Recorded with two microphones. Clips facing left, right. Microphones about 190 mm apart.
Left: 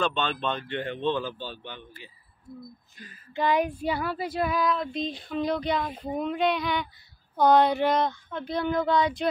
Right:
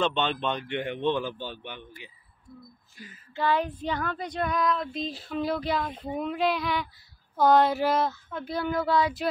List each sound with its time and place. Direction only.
0.0 s a man's voice: 20° right (ahead or behind)
3.3 s child singing: 15° left (ahead or behind); by 5.9 s 5° right (ahead or behind)
5.9 s speech: 5° left (ahead or behind)
6.2 s child singing: centre (ahead or behind)